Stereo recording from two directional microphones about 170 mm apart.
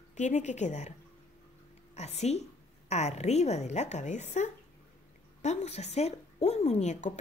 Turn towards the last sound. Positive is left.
turn(degrees=40)  # may be behind; listen again after turning